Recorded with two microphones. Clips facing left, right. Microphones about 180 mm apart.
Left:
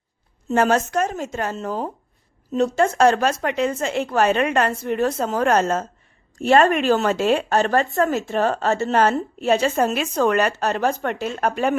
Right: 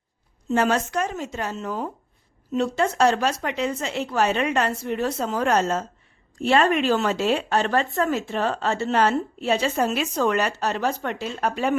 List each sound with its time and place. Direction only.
0.5 s a woman's voice: 45° left (ahead or behind)